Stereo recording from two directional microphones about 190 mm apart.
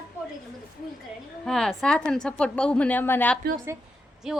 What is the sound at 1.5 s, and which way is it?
A woman's voice, centre (ahead or behind).